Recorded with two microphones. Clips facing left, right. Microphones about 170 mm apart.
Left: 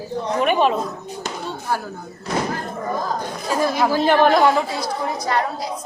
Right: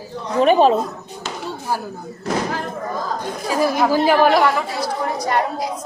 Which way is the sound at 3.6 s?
10° right (ahead or behind).